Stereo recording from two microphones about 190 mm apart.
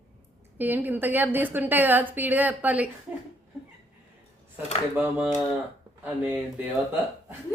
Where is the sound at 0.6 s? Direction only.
10° right (ahead or behind).